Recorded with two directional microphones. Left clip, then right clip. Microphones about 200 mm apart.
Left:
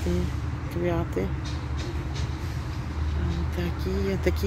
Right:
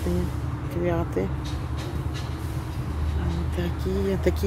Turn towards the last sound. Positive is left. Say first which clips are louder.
# right 2 dB
turn(degrees=-5)  # may be behind; listen again after turning